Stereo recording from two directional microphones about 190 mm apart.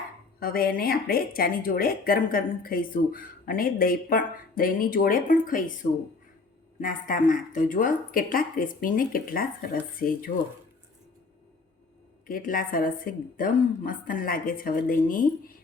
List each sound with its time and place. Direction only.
0.3 s speech: 50° left (ahead or behind)
12.3 s speech: 45° left (ahead or behind)